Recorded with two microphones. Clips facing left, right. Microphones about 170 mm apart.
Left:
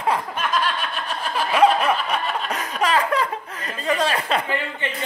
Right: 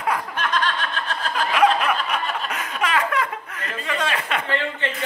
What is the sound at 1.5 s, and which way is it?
Snicker, 30° left (ahead or behind).